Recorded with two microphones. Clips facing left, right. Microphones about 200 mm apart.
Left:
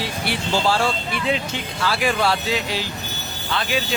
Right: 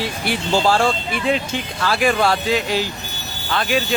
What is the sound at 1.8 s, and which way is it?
Speech, 50° right (ahead or behind).